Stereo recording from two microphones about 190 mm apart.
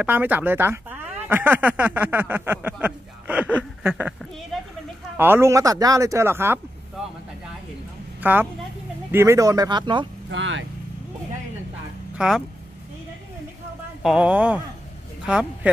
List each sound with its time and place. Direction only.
0.0 s speech: 10° right (ahead or behind)
5.1 s speech: 10° right (ahead or behind)
8.2 s speech: 10° right (ahead or behind)
10.3 s speech: 75° right (ahead or behind)
12.2 s speech: centre (ahead or behind)
14.0 s speech: 5° right (ahead or behind)